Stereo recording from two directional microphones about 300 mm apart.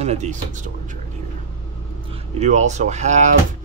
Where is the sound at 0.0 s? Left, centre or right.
Right.